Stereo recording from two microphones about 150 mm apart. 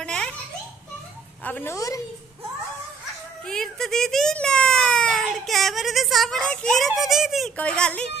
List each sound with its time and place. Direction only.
0.0 s baby laughter: 5° left (ahead or behind)
1.4 s a woman's voice: 15° left (ahead or behind)
3.4 s a child's voice: 5° left (ahead or behind)